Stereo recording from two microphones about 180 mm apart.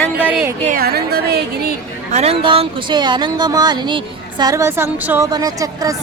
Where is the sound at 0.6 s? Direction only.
50° right (ahead or behind).